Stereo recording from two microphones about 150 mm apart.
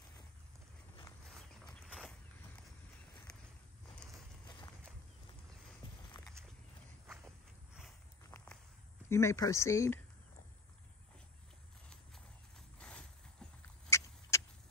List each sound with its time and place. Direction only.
1.3 s a sound: 5° left (ahead or behind)
7.8 s walk: 5° left (ahead or behind)
9.1 s speech: 20° left (ahead or behind)
12.5 s clip-clop: 5° left (ahead or behind)
13.8 s rodents: 20° left (ahead or behind)